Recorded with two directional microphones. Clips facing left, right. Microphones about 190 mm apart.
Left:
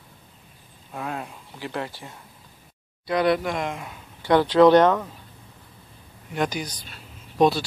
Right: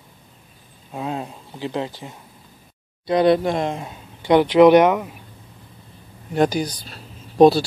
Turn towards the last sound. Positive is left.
turn(degrees=-35)  # may be behind; listen again after turning